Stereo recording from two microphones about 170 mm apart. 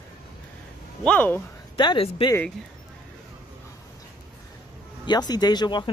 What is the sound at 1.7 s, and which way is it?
Speech, 30° left (ahead or behind).